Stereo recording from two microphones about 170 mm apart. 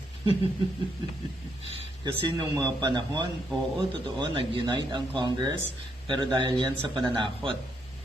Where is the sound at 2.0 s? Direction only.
25° right (ahead or behind).